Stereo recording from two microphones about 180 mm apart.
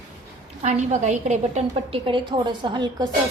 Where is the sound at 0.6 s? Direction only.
40° right (ahead or behind).